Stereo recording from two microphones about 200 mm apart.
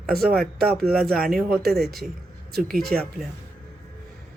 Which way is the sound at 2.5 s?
50° right (ahead or behind).